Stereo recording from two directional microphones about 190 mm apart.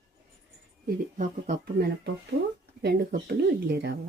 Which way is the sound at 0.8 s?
45° right (ahead or behind).